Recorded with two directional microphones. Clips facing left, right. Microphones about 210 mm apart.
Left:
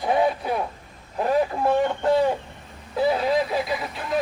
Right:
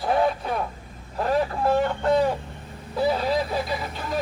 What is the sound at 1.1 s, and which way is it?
Speech, 15° left (ahead or behind).